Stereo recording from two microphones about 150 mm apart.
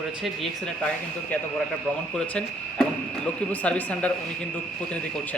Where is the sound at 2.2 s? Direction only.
5° left (ahead or behind).